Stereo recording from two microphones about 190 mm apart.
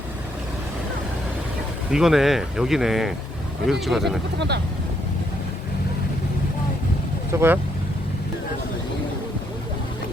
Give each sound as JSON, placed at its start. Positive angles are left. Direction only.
{"t": 1.9, "sound": "speech", "side_deg": 0}
{"t": 4.4, "sound": "speech", "side_deg": -65}
{"t": 7.3, "sound": "speech", "side_deg": -10}